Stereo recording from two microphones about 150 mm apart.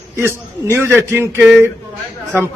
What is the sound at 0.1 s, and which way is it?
A man's voice, 15° right (ahead or behind).